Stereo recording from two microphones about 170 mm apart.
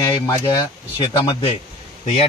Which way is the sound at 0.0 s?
25° left (ahead or behind).